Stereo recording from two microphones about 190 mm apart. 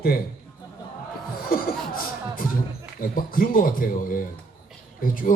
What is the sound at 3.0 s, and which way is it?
A man's voice, 50° left (ahead or behind).